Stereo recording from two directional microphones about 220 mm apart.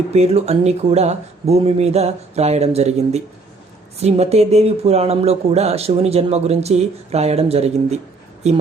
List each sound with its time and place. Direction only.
0.1 s speech: 30° right (ahead or behind)